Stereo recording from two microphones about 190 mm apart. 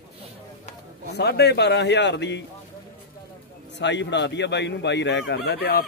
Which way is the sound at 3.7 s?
70° left (ahead or behind).